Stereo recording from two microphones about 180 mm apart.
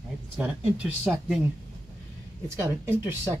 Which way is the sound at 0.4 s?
10° right (ahead or behind).